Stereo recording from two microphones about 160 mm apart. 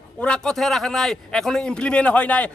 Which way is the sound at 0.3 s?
5° left (ahead or behind).